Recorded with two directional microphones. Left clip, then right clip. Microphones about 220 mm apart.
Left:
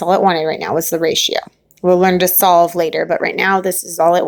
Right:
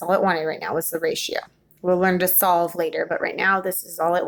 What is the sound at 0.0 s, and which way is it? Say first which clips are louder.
Speech: left 7 dB; 30° left (ahead or behind).